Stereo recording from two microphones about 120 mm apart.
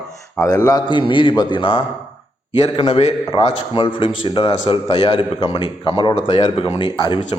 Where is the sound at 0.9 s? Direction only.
45° left (ahead or behind).